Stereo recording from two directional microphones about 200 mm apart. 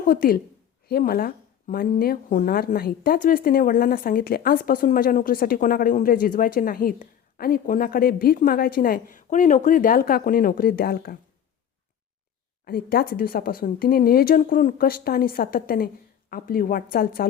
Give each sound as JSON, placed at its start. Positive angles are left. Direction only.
{"t": 0.0, "sound": "a woman's voice", "side_deg": 45}
{"t": 12.6, "sound": "a woman's voice", "side_deg": 50}